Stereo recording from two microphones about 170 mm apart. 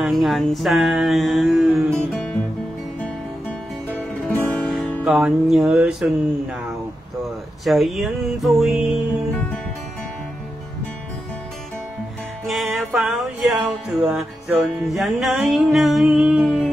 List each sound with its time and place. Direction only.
0.0 s music: centre (ahead or behind)
3.9 s music: 10° left (ahead or behind)
4.6 s music: centre (ahead or behind)
7.6 s music: centre (ahead or behind)
12.4 s music: centre (ahead or behind)